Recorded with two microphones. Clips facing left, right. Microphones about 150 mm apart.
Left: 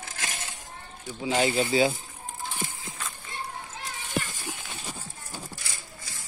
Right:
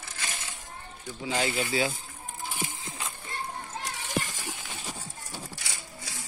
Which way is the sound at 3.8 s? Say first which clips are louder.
Left 1 dB; 90° right.